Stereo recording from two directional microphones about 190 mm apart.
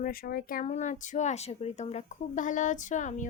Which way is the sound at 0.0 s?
50° left (ahead or behind).